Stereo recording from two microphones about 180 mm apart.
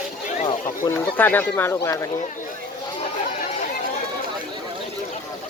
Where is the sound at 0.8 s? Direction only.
10° left (ahead or behind).